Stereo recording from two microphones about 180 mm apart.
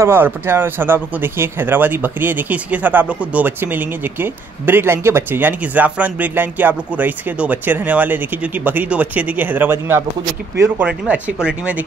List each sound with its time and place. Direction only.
0.0 s speech: 10° right (ahead or behind)